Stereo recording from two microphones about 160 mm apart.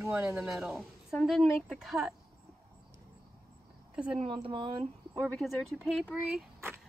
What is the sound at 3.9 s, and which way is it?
Speech, 5° right (ahead or behind).